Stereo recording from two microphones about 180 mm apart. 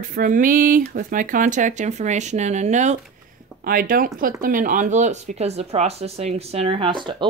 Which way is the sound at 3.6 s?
55° right (ahead or behind).